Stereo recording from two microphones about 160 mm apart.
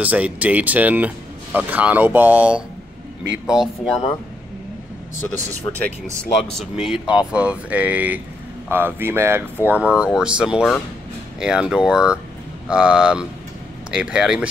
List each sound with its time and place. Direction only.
0.0 s speech: 10° right (ahead or behind)
6.6 s speech: 5° right (ahead or behind)